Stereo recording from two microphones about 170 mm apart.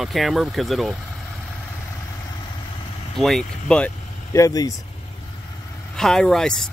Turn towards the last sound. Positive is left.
turn(degrees=5)  # may be behind; listen again after turning